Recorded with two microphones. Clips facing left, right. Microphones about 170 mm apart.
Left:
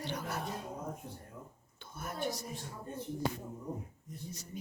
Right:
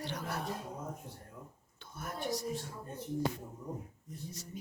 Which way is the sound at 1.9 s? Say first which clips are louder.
Even; centre (ahead or behind).